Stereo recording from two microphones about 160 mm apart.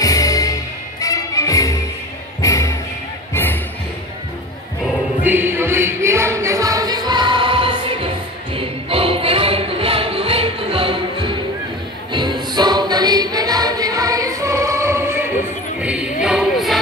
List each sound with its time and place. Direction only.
0.0 s music: 20° left (ahead or behind)
4.8 s music: 10° right (ahead or behind)